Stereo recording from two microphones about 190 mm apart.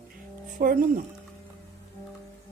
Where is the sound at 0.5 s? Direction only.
45° right (ahead or behind).